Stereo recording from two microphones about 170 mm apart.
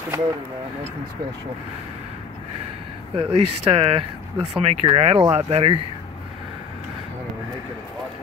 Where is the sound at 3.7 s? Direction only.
35° right (ahead or behind).